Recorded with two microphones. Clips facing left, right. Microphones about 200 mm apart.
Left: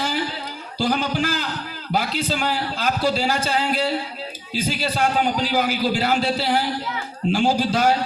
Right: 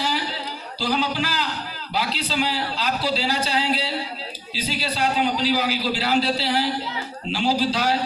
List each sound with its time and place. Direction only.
0.8 s a man's voice: 50° left (ahead or behind)